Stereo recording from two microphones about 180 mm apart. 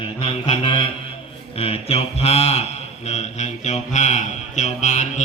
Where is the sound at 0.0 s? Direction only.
30° left (ahead or behind).